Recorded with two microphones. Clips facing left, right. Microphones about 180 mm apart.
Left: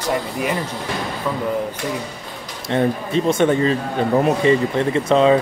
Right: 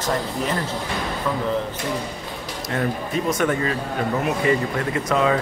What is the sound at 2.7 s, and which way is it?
Speech, 25° left (ahead or behind).